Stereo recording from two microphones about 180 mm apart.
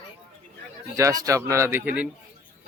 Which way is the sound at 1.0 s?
20° right (ahead or behind).